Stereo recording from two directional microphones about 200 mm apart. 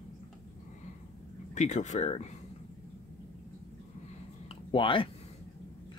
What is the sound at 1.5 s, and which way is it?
Speech, 35° left (ahead or behind).